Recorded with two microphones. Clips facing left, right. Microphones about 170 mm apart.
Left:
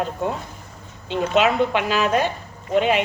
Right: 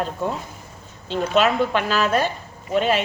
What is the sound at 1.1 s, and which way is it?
A woman's voice, 15° left (ahead or behind).